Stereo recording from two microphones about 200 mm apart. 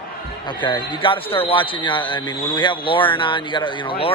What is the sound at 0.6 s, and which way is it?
Speech, 25° left (ahead or behind).